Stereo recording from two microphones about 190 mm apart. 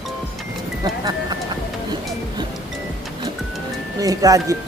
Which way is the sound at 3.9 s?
20° right (ahead or behind).